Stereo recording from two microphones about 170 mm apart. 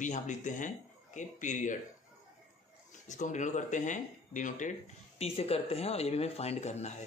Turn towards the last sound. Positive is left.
turn(degrees=40)  # may be behind; listen again after turning